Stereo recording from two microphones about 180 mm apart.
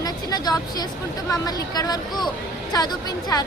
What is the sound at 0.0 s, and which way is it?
Vehicle, 20° left (ahead or behind).